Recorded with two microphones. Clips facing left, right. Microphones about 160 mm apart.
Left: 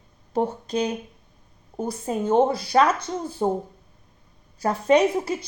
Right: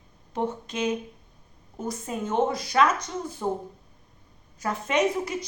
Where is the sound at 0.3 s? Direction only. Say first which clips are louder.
Left 5 dB; 35° left (ahead or behind).